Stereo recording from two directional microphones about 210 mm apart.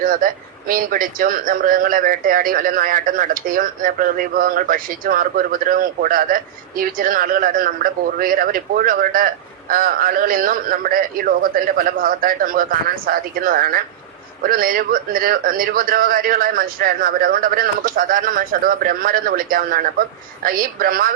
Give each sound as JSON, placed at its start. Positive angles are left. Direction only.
{"t": 0.0, "sound": "speech", "side_deg": -40}